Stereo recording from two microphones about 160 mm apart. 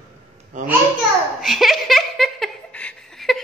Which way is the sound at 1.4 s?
Centre (ahead or behind).